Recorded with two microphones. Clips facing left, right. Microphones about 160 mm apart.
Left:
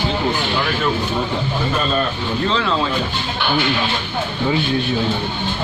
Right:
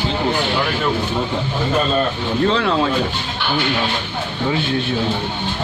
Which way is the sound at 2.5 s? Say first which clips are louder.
Right 2 dB; 55° right (ahead or behind).